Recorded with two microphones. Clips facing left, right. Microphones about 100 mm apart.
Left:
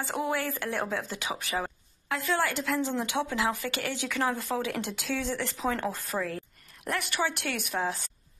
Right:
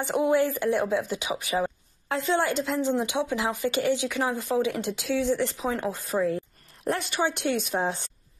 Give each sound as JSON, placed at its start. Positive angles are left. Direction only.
{"t": 0.0, "sound": "a woman's voice", "side_deg": -20}